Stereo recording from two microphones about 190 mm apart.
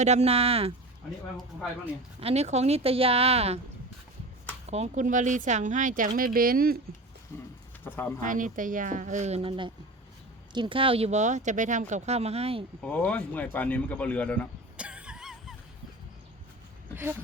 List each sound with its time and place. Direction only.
0.0 s speech: 35° right (ahead or behind)
2.2 s speech: 35° right (ahead or behind)
4.7 s speech: 35° right (ahead or behind)
7.9 s a man's voice: 10° left (ahead or behind)
8.2 s speech: 45° right (ahead or behind)
12.8 s a man's voice: 5° left (ahead or behind)
14.8 s a sound: 5° right (ahead or behind)
16.9 s a sound: 10° right (ahead or behind)